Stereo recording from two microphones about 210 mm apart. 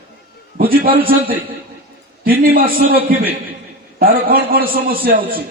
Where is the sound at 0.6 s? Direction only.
45° right (ahead or behind).